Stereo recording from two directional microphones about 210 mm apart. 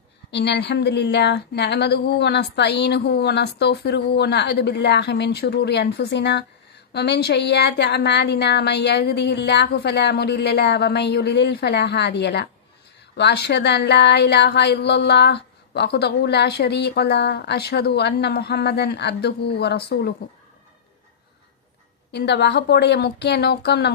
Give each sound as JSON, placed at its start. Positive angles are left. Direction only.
{"t": 0.3, "sound": "speech", "side_deg": 55}
{"t": 22.1, "sound": "speech", "side_deg": 55}